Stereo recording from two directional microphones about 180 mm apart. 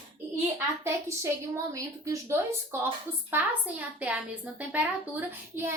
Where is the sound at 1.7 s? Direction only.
20° right (ahead or behind).